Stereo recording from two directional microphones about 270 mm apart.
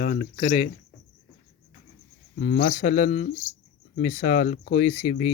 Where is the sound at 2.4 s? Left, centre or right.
Left.